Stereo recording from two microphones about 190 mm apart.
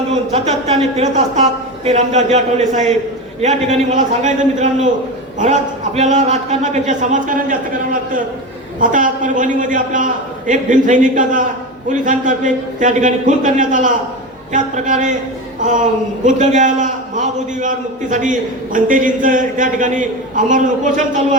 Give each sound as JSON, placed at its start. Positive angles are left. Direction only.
{"t": 0.1, "sound": "a man's voice", "side_deg": -35}
{"t": 8.8, "sound": "a man's voice", "side_deg": -45}